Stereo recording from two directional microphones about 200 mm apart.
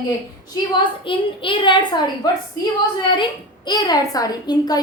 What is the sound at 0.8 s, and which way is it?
A woman's voice, 25° left (ahead or behind).